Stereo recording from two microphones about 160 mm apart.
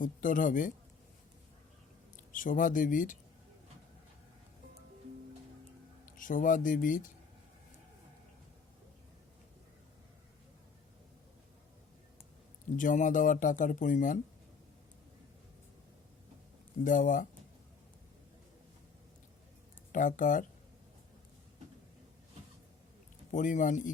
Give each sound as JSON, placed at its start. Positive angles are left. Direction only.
{"t": 0.0, "sound": "speech", "side_deg": 55}
{"t": 2.3, "sound": "speech", "side_deg": 55}
{"t": 6.1, "sound": "speech", "side_deg": 55}
{"t": 12.7, "sound": "speech", "side_deg": 55}
{"t": 16.8, "sound": "speech", "side_deg": 55}
{"t": 19.9, "sound": "speech", "side_deg": 55}
{"t": 23.3, "sound": "speech", "side_deg": 55}